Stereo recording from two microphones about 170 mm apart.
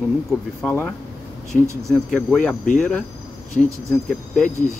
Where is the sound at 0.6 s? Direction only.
10° left (ahead or behind).